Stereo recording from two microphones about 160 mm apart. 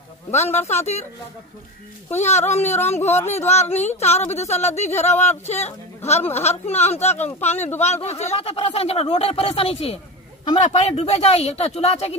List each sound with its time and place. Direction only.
0.3 s a woman's voice: 45° left (ahead or behind)
2.1 s a woman's voice: 45° left (ahead or behind)